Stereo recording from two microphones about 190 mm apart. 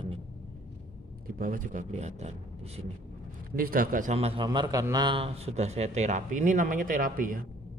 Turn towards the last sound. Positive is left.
turn(degrees=-45)  # may be behind; listen again after turning